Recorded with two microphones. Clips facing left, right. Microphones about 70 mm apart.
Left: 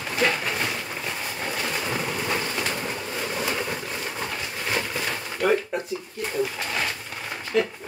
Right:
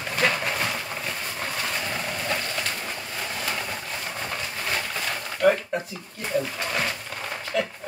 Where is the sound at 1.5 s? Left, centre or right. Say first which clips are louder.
Left 2 dB; centre.